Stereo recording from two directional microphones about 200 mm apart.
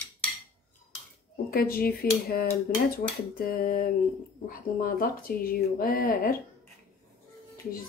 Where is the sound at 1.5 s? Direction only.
50° left (ahead or behind).